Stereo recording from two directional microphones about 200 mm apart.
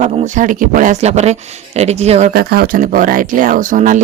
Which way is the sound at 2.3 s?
50° right (ahead or behind).